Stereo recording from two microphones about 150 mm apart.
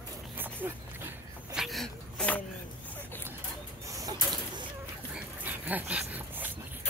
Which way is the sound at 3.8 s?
25° right (ahead or behind).